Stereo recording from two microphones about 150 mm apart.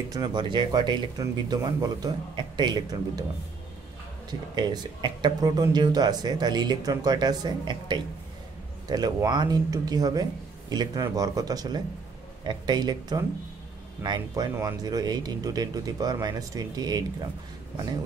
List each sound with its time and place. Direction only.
0.1 s speech: 25° right (ahead or behind)
4.3 s speech: 30° right (ahead or behind)